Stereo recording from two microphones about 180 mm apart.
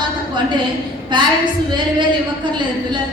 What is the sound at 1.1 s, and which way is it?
A woman's voice, 25° right (ahead or behind).